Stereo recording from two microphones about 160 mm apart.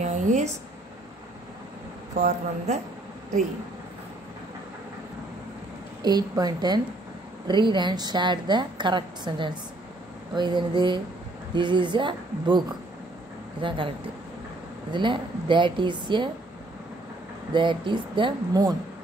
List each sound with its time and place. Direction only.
0.0 s a sound: 50° right (ahead or behind)
2.1 s speech: 45° right (ahead or behind)
6.0 s a woman's voice: 25° right (ahead or behind)
17.5 s a woman's voice: 30° right (ahead or behind)